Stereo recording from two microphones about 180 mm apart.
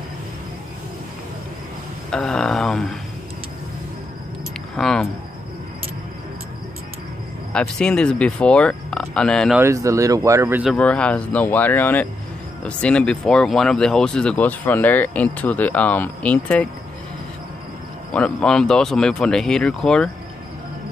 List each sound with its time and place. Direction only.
2.0 s speech: 5° left (ahead or behind)
4.7 s a sound: 5° left (ahead or behind)
7.5 s speech: 5° left (ahead or behind)
9.6 s speech: 15° right (ahead or behind)
10.6 s speech: 5° left (ahead or behind)
18.1 s speech: 5° left (ahead or behind)